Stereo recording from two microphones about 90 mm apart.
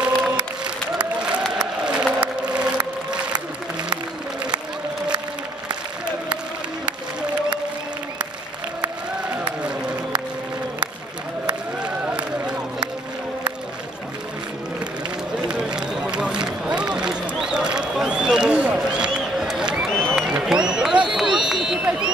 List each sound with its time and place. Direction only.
0.0 s music: 10° right (ahead or behind)
1.5 s crowd: 10° right (ahead or behind)
6.9 s music: 10° right (ahead or behind)
11.4 s run: 10° right (ahead or behind)
15.4 s run: 10° right (ahead or behind)
19.9 s a sound: 10° left (ahead or behind)
20.2 s run: 5° right (ahead or behind)